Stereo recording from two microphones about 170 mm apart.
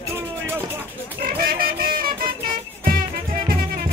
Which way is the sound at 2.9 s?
55° right (ahead or behind).